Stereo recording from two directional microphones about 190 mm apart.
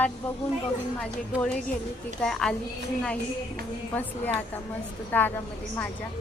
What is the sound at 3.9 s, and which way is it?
A woman's voice, 10° left (ahead or behind).